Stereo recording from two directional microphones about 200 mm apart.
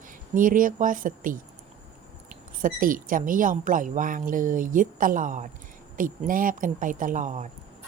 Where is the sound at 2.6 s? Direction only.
45° right (ahead or behind).